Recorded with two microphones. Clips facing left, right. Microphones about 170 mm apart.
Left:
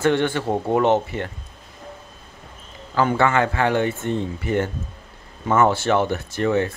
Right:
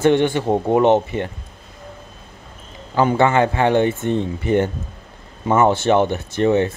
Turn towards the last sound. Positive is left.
turn(degrees=-20)  # may be behind; listen again after turning